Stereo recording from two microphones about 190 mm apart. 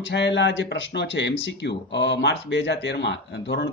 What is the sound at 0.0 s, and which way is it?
Speech, 65° left (ahead or behind).